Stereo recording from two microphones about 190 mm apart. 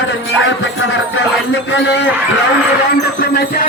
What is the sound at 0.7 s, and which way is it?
Music, 90° left.